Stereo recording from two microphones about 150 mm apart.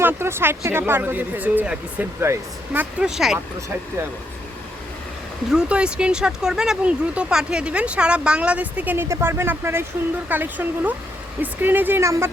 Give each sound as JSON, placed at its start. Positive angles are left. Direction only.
{"t": 0.0, "sound": "speech", "side_deg": -15}
{"t": 3.0, "sound": "speech", "side_deg": -5}
{"t": 5.5, "sound": "speech", "side_deg": -5}